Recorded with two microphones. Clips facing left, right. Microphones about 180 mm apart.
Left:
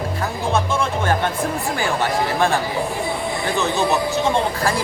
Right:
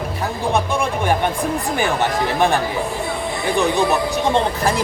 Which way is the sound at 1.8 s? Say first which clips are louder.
Right 1 dB; 20° right (ahead or behind).